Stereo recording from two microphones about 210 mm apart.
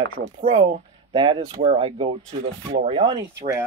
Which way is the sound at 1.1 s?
20° right (ahead or behind).